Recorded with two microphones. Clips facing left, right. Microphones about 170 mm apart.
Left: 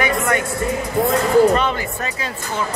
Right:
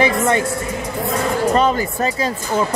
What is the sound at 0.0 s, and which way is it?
Speech, 30° right (ahead or behind).